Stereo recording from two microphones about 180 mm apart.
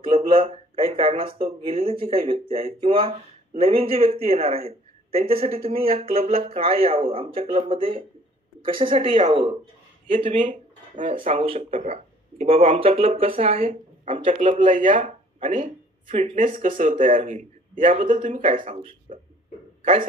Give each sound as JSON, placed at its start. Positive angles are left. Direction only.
{"t": 0.0, "sound": "speech", "side_deg": -30}
{"t": 11.0, "sound": "speech", "side_deg": -40}
{"t": 15.5, "sound": "speech", "side_deg": -30}
{"t": 19.1, "sound": "speech", "side_deg": -35}